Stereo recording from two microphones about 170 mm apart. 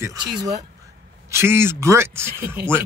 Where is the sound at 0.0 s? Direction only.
20° right (ahead or behind).